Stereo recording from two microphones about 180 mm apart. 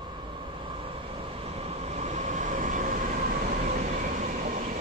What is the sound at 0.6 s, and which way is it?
Train, 30° right (ahead or behind).